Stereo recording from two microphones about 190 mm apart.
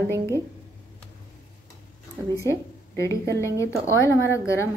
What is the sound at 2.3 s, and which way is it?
A woman's voice, 15° left (ahead or behind).